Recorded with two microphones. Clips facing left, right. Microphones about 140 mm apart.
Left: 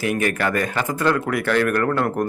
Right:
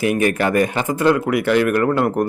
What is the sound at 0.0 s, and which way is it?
A man's voice, 20° right (ahead or behind).